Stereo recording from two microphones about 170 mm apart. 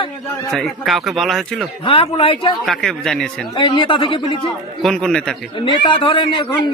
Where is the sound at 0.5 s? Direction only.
Centre (ahead or behind).